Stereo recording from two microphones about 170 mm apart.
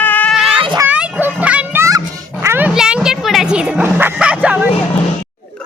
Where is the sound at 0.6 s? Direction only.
25° right (ahead or behind).